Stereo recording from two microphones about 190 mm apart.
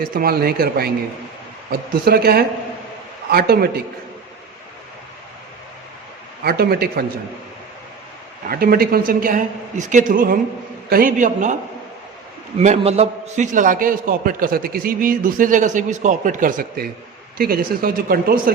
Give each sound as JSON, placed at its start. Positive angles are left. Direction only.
{"t": 0.1, "sound": "a man's voice", "side_deg": -50}
{"t": 6.4, "sound": "speech", "side_deg": -55}
{"t": 8.4, "sound": "a man's voice", "side_deg": -50}
{"t": 12.5, "sound": "a man's voice", "side_deg": -35}